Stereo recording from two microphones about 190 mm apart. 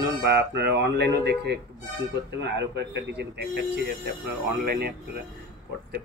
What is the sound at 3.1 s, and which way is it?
Speech, 60° right (ahead or behind).